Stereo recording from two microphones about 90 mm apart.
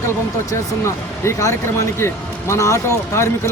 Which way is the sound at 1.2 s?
35° left (ahead or behind).